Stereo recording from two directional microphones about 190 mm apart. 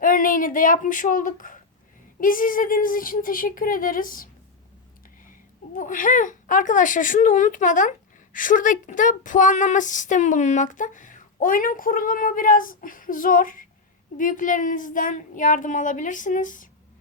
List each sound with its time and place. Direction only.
0.0 s a sound: 45° left (ahead or behind)
2.2 s speech: 45° left (ahead or behind)
5.7 s speech: 45° left (ahead or behind)